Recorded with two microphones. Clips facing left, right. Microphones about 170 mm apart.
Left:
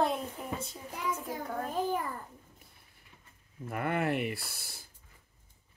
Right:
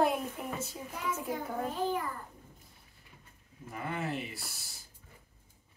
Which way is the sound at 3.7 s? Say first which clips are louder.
Left 5 dB; 65° left (ahead or behind).